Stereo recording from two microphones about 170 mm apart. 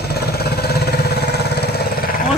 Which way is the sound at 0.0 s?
70° left (ahead or behind).